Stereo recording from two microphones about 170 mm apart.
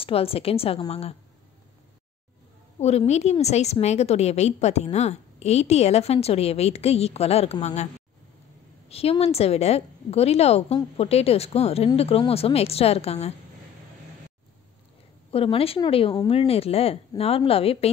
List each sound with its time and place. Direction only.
0.0 s a woman's voice: 35° left (ahead or behind)
2.8 s a woman's voice: 40° left (ahead or behind)
15.3 s a woman's voice: 35° left (ahead or behind)